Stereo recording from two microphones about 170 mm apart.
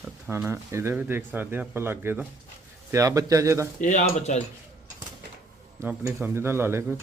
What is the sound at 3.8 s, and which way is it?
Speech, 45° left (ahead or behind).